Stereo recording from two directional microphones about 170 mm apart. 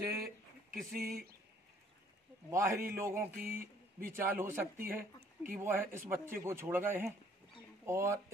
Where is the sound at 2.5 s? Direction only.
15° right (ahead or behind).